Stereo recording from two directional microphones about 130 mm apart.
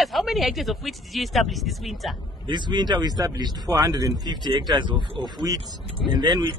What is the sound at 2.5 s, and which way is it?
Speech, 35° right (ahead or behind).